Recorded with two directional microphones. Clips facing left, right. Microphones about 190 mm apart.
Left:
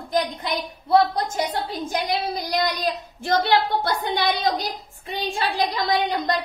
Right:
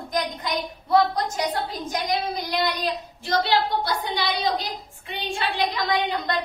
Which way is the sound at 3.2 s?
55° left (ahead or behind).